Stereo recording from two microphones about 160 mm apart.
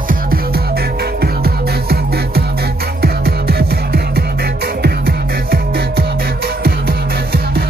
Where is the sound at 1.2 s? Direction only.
75° right (ahead or behind).